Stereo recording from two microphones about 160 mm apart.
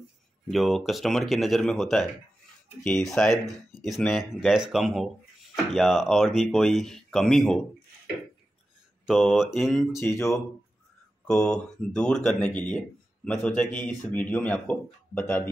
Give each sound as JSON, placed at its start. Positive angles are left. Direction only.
{"t": 0.5, "sound": "speech", "side_deg": 0}
{"t": 9.0, "sound": "speech", "side_deg": -5}
{"t": 9.9, "sound": "speech", "side_deg": 15}
{"t": 11.2, "sound": "speech", "side_deg": 5}